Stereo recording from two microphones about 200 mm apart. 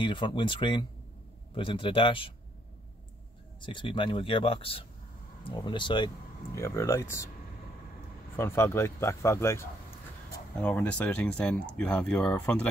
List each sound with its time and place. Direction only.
0.0 s speech: 25° left (ahead or behind)
3.6 s speech: 25° left (ahead or behind)
8.4 s speech: 15° left (ahead or behind)